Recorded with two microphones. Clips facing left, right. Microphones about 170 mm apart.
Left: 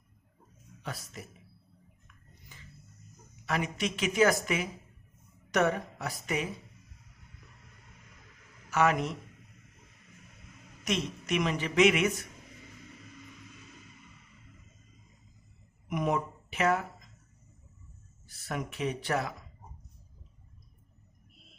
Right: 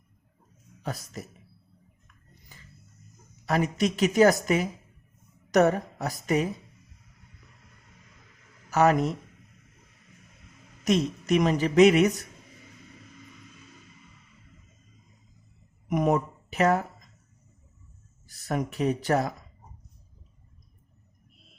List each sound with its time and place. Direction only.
0.8 s a woman's voice: 40° right (ahead or behind)
2.5 s music: 40° right (ahead or behind)
3.4 s a woman's voice: 40° right (ahead or behind)
8.7 s a woman's voice: 40° right (ahead or behind)
10.8 s a woman's voice: 40° right (ahead or behind)
15.9 s speech: 40° right (ahead or behind)
18.3 s speech: 40° right (ahead or behind)